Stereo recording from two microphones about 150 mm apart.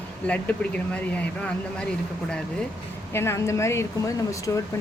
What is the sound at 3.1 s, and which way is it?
Speech, 15° left (ahead or behind).